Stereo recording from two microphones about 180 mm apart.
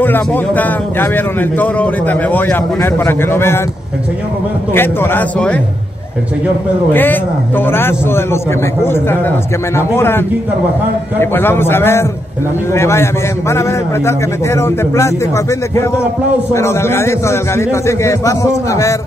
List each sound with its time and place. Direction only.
0.0 s speech: 10° left (ahead or behind)
4.7 s speech: 10° left (ahead or behind)
6.9 s speech: 10° left (ahead or behind)